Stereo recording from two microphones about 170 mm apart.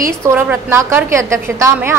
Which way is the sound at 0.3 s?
15° right (ahead or behind).